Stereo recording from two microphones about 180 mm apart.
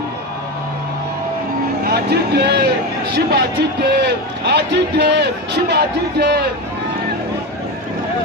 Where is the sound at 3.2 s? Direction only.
65° right (ahead or behind).